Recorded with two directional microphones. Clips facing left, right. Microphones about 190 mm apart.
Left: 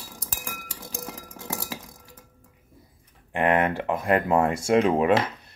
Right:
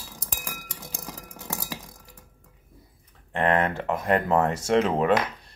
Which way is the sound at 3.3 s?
10° left (ahead or behind).